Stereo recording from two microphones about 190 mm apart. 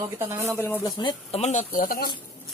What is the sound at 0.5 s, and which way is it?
Speech, 10° left (ahead or behind).